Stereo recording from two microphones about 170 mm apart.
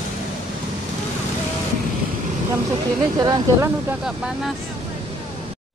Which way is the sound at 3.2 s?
25° right (ahead or behind).